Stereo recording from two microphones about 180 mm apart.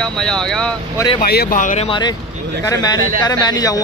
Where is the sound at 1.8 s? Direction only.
25° left (ahead or behind).